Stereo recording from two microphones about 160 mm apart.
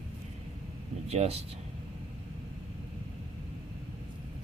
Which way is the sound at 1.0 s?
40° right (ahead or behind).